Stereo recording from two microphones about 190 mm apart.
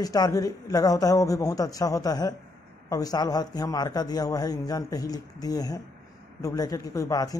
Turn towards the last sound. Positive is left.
turn(degrees=20)  # may be behind; listen again after turning